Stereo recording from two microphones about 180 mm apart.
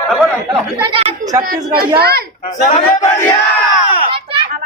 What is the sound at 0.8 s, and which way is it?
Chatter, 25° right (ahead or behind).